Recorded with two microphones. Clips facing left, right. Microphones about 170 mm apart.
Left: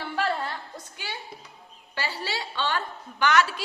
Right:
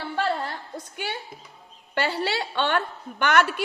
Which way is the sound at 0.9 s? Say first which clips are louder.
Right 6 dB; 55° right (ahead or behind).